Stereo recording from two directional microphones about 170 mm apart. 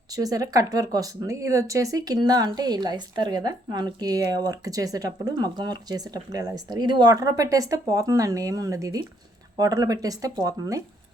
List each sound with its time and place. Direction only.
0.1 s speech: 20° right (ahead or behind)